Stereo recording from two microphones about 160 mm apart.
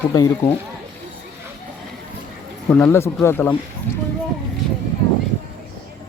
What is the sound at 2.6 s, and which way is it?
Speech, 10° left (ahead or behind).